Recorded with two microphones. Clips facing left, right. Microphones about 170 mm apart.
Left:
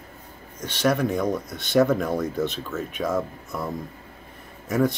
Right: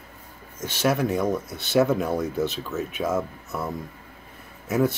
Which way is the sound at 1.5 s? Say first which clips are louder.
Even; 15° left (ahead or behind).